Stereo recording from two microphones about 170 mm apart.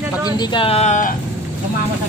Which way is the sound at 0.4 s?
30° left (ahead or behind).